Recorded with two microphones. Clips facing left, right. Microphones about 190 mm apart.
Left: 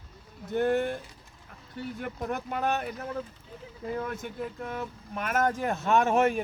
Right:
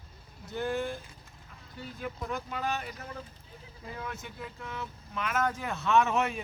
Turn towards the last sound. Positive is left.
turn(degrees=50)  # may be behind; listen again after turning